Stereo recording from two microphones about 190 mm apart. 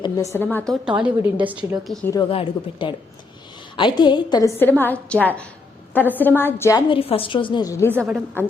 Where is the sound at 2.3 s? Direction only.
30° left (ahead or behind).